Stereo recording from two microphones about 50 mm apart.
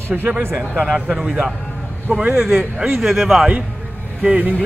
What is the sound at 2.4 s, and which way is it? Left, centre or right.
A man's voice, centre.